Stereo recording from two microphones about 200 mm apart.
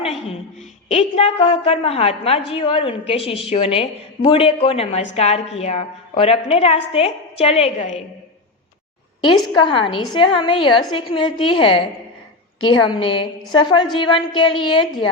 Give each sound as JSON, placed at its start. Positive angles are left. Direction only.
{"t": 0.9, "sound": "a woman's voice", "side_deg": 30}
{"t": 9.6, "sound": "a woman's voice", "side_deg": 25}